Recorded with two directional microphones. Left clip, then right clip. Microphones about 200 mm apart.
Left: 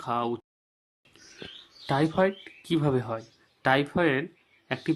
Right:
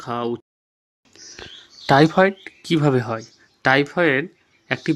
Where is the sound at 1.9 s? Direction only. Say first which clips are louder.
Right 10 dB; 30° right (ahead or behind); by 4.3 s 10° right (ahead or behind).